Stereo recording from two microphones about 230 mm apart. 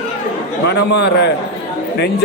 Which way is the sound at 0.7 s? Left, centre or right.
Left.